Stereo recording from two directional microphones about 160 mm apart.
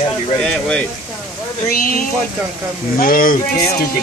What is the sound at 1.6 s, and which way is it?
Speech, 60° left (ahead or behind).